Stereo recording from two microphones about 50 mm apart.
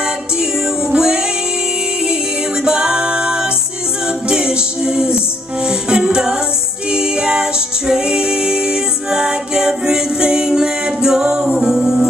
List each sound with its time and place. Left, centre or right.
0.9 s music: centre
2.6 s music: centre